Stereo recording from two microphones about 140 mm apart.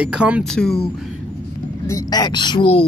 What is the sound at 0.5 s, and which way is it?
Speech, 5° left (ahead or behind).